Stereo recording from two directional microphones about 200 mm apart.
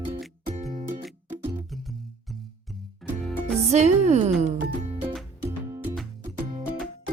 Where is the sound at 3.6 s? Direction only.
35° right (ahead or behind).